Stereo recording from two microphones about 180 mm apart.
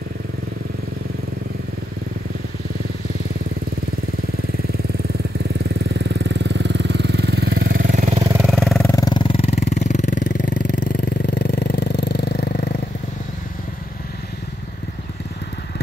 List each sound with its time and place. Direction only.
6.0 s vehicle: 80° right; by 7.9 s 65° right (ahead or behind)
7.9 s vehicle: 40° right (ahead or behind)
8.4 s vehicle: centre (ahead or behind)
8.9 s a sound: 25° left (ahead or behind); by 12.2 s 60° left (ahead or behind)
12.3 s vehicle: 60° left (ahead or behind)